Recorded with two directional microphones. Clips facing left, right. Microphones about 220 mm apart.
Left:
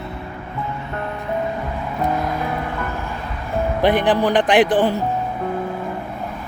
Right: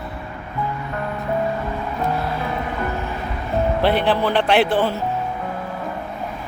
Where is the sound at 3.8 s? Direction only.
15° left (ahead or behind).